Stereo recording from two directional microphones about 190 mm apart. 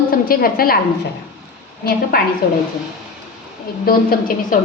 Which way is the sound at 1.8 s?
50° left (ahead or behind).